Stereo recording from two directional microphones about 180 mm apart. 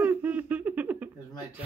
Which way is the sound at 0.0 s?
10° right (ahead or behind).